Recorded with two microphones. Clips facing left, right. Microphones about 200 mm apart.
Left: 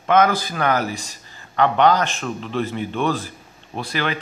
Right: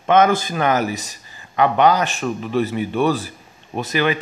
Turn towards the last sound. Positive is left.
turn(degrees=-15)  # may be behind; listen again after turning